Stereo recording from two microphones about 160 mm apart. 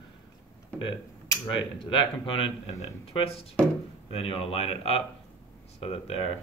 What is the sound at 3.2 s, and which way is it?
Speech, 35° left (ahead or behind).